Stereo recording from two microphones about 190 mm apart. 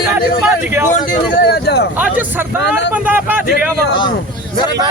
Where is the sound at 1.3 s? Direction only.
55° left (ahead or behind).